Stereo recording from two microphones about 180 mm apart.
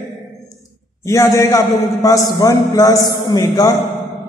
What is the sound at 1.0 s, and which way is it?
A man's voice, 15° left (ahead or behind).